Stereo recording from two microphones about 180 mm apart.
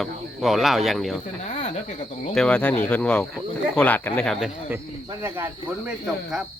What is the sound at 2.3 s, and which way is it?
Speech, 5° left (ahead or behind).